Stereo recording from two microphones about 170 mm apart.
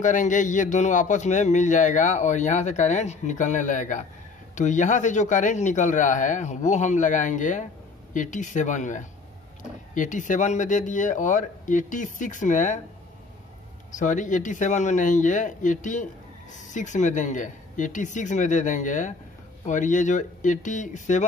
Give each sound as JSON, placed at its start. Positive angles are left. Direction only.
{"t": 0.0, "sound": "a man's voice", "side_deg": 45}
{"t": 13.9, "sound": "a man's voice", "side_deg": 45}